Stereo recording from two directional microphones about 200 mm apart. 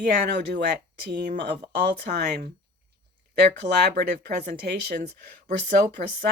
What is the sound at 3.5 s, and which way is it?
Speech, 50° right (ahead or behind).